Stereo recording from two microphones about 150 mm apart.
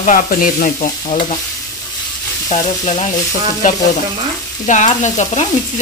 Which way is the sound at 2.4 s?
55° left (ahead or behind).